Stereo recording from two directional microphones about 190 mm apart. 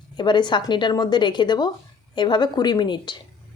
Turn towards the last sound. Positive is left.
turn(degrees=25)  # may be behind; listen again after turning